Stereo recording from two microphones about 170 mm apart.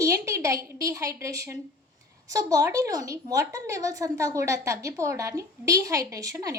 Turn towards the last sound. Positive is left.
turn(degrees=-20)  # may be behind; listen again after turning